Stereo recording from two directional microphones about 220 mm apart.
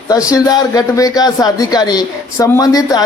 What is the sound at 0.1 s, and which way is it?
Speech, 15° left (ahead or behind).